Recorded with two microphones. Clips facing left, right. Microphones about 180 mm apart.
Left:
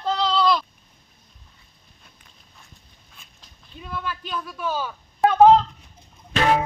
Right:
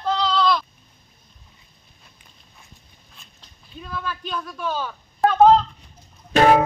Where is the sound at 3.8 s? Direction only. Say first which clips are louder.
Right 1 dB; 5° left (ahead or behind).